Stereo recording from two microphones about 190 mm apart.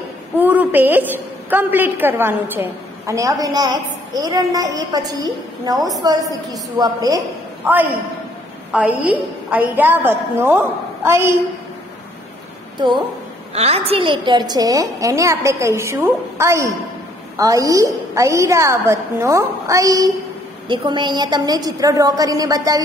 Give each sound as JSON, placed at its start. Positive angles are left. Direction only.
{"t": 0.4, "sound": "a woman's voice", "side_deg": -10}
{"t": 5.8, "sound": "a woman's voice", "side_deg": 0}
{"t": 6.0, "sound": "a woman's voice", "side_deg": -20}
{"t": 12.7, "sound": "a woman's voice", "side_deg": -25}